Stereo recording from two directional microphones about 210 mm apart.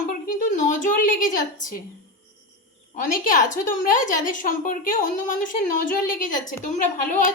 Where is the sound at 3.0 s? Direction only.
40° left (ahead or behind).